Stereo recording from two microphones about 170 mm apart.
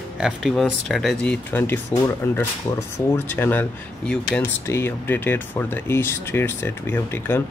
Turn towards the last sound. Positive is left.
turn(degrees=15)  # may be behind; listen again after turning